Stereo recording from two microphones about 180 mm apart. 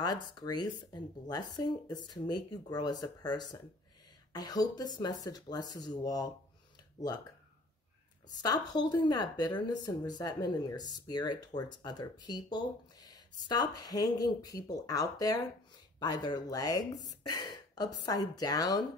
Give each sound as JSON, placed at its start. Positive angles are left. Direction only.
{"t": 0.0, "sound": "speech", "side_deg": 25}
{"t": 8.4, "sound": "speech", "side_deg": 20}